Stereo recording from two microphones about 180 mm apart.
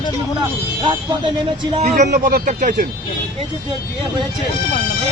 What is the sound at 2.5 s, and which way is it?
Speech, 45° right (ahead or behind).